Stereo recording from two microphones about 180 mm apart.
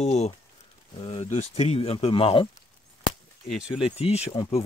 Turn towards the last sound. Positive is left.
turn(degrees=30)  # may be behind; listen again after turning